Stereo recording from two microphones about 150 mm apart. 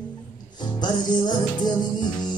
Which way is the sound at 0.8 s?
30° left (ahead or behind).